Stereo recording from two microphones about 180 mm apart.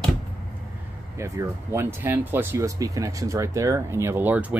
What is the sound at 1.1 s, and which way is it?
Speech, 15° right (ahead or behind).